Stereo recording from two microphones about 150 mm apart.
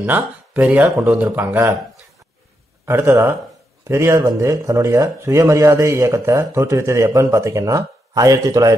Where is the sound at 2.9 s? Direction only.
15° right (ahead or behind).